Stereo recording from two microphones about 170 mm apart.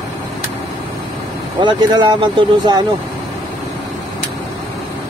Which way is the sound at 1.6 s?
25° right (ahead or behind).